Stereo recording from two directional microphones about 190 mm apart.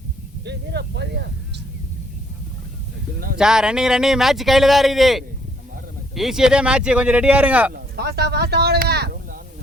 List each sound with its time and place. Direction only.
0.4 s speech: 60° right (ahead or behind)
3.3 s speech: 5° right (ahead or behind)
7.7 s speech: 55° right (ahead or behind)